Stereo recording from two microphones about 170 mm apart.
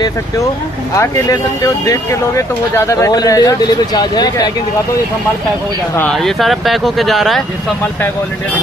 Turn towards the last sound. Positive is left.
turn(degrees=0)  # may be behind; listen again after turning